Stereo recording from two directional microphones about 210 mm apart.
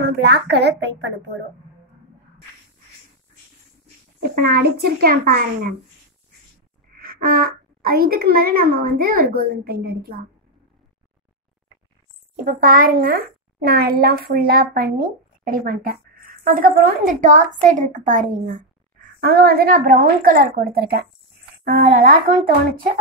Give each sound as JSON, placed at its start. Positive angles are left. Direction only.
{"t": 0.2, "sound": "a woman's voice", "side_deg": -55}
{"t": 4.2, "sound": "a woman's voice", "side_deg": -45}
{"t": 7.0, "sound": "a woman's voice", "side_deg": -45}
{"t": 12.4, "sound": "a woman's voice", "side_deg": -40}